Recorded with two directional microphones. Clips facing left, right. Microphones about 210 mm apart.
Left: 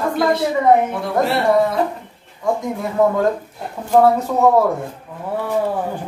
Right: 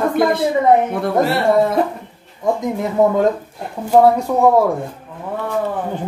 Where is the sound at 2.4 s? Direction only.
20° right (ahead or behind).